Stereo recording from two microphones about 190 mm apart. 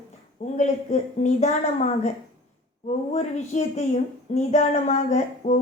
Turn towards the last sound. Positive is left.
turn(degrees=40)  # may be behind; listen again after turning